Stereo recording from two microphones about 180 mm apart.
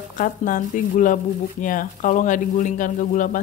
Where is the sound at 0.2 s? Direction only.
45° left (ahead or behind).